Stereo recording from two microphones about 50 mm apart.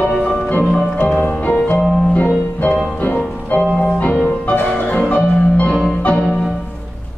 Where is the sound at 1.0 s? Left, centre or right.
Left.